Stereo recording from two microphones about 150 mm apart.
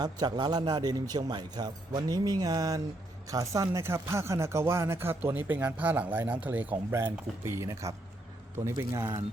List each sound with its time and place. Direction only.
0.0 s a man's voice: 25° right (ahead or behind)